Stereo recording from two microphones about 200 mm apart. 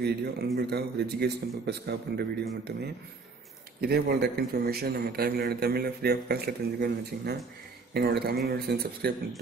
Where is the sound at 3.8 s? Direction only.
50° right (ahead or behind).